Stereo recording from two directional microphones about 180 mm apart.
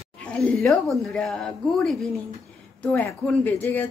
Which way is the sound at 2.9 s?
10° left (ahead or behind).